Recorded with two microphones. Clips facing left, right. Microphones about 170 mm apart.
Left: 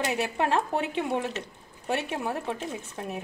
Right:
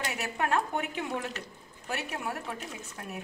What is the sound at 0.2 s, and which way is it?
Speech, 25° left (ahead or behind).